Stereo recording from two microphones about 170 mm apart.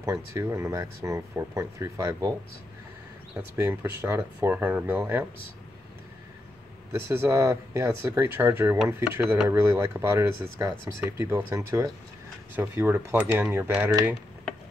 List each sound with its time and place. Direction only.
0.0 s speech: 20° right (ahead or behind)
3.5 s speech: 15° right (ahead or behind)
6.9 s speech: 15° right (ahead or behind)